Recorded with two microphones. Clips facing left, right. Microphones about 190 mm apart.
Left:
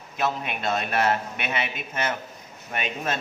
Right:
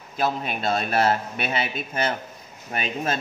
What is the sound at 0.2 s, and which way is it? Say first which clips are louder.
A man's voice: right 2 dB; 35° right (ahead or behind).